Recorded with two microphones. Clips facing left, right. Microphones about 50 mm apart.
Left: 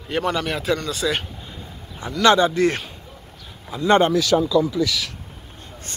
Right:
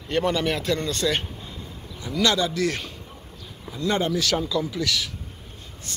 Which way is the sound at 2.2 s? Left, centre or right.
Left.